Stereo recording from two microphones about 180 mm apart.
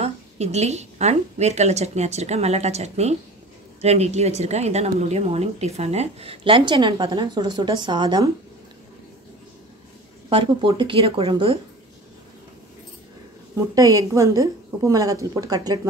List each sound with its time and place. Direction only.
0.0 s a woman's voice: 35° right (ahead or behind)
10.3 s a woman's voice: 30° right (ahead or behind)
13.7 s a woman's voice: 20° right (ahead or behind)